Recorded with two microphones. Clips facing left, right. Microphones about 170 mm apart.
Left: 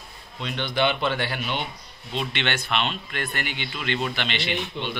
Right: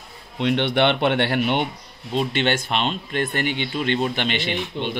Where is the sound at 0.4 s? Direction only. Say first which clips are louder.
Right 6 dB; 65° right (ahead or behind).